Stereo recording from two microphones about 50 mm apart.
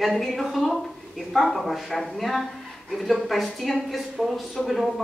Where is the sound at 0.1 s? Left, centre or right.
Centre.